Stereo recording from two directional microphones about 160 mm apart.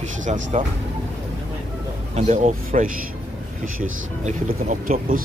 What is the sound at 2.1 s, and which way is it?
Speech, 50° right (ahead or behind).